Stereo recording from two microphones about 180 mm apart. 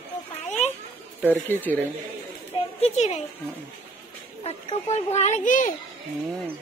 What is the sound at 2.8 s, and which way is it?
Speech, 35° left (ahead or behind).